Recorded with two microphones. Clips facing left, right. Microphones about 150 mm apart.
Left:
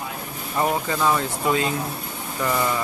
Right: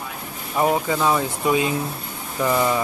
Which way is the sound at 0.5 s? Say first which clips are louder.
Right 3 dB; 10° right (ahead or behind).